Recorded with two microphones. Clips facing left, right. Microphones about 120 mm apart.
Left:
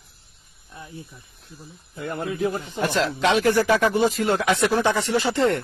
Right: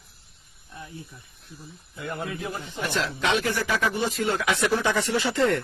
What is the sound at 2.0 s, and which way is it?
Speech, 45° left (ahead or behind).